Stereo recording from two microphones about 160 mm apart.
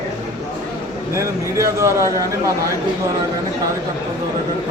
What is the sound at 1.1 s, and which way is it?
Speech, 20° right (ahead or behind).